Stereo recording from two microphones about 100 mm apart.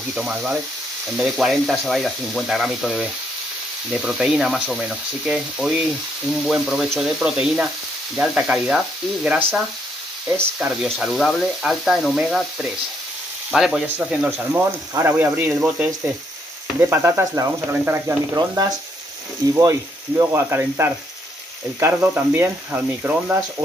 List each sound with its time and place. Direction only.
0.1 s speech: 5° right (ahead or behind)
10.6 s speech: 10° right (ahead or behind)
21.9 s speech: 15° right (ahead or behind)